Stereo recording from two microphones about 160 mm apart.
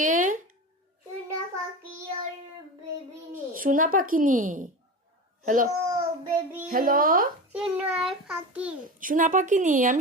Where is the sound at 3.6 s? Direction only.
60° right (ahead or behind).